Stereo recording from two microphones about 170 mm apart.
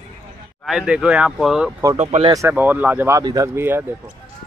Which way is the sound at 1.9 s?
40° right (ahead or behind).